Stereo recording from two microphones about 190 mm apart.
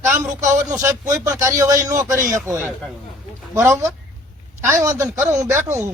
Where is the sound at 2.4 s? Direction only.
5° right (ahead or behind).